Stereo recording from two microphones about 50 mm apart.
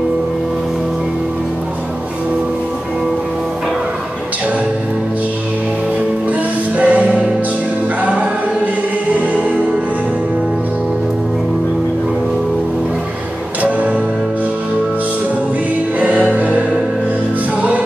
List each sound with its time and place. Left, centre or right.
6.8 s music: right
13.6 s music: right
16.0 s music: right